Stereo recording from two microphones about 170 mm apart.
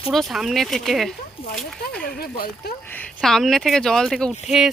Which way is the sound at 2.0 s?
60° left (ahead or behind).